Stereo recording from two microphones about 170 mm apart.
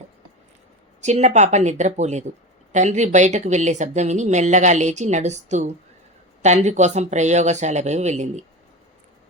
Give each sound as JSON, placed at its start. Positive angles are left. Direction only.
{"t": 1.0, "sound": "a woman's voice", "side_deg": -40}